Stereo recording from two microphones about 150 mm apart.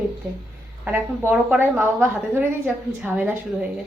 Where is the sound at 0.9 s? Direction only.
10° right (ahead or behind).